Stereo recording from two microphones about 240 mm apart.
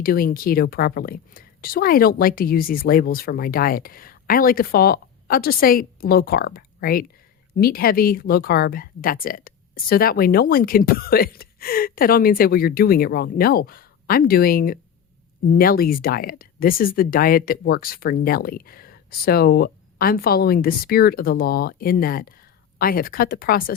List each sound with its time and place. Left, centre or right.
0.0 s speech: left